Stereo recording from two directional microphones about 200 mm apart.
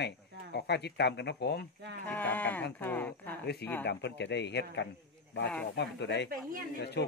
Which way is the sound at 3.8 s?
55° left (ahead or behind).